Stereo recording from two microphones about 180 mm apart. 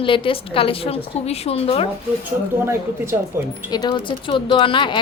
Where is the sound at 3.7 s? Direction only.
25° left (ahead or behind).